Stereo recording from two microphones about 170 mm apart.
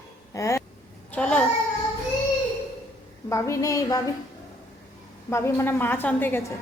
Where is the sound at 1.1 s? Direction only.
5° left (ahead or behind).